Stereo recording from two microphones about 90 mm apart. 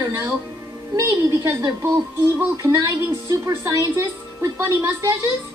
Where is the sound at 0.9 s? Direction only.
30° right (ahead or behind).